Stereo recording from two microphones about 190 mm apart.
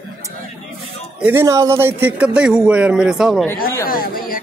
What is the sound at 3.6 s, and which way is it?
Speech, 50° left (ahead or behind).